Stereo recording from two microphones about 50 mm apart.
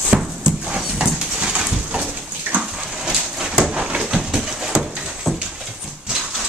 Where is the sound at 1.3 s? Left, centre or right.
Centre.